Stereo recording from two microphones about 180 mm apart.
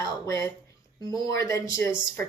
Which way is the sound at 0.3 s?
15° left (ahead or behind).